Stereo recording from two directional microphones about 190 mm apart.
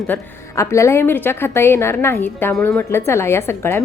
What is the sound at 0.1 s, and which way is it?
A woman's voice, 15° left (ahead or behind).